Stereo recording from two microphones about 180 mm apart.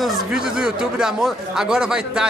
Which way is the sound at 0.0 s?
Centre (ahead or behind).